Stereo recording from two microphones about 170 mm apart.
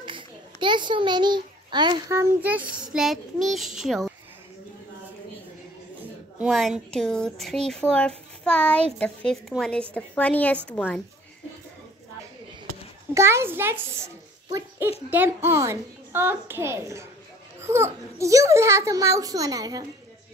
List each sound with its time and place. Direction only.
0.0 s a sound: 30° right (ahead or behind)
2.1 s speech: 10° right (ahead or behind)
6.4 s a woman's voice: 5° right (ahead or behind)
13.1 s a child's voice: 15° right (ahead or behind)